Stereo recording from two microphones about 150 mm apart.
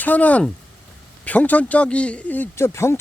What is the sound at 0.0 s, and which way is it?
A man's voice, 10° left (ahead or behind).